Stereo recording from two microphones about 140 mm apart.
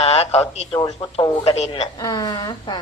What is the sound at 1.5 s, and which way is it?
Speech, 50° left (ahead or behind).